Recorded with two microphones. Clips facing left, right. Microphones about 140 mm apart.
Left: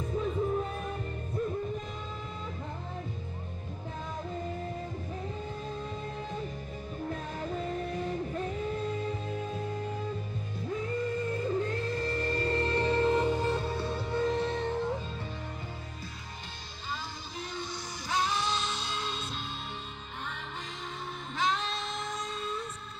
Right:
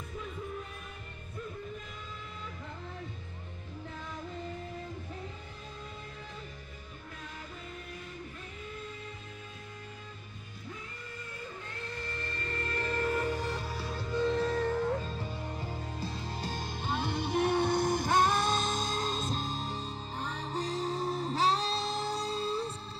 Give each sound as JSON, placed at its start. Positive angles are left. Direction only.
{"t": 0.1, "sound": "music", "side_deg": 45}
{"t": 7.5, "sound": "music", "side_deg": 40}
{"t": 11.6, "sound": "music", "side_deg": 35}
{"t": 16.9, "sound": "music", "side_deg": -65}
{"t": 20.5, "sound": "music", "side_deg": -35}